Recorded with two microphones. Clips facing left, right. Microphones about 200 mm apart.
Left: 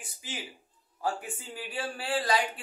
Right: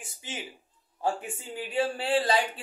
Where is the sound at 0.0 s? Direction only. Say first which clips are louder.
Right 2 dB; 25° right (ahead or behind).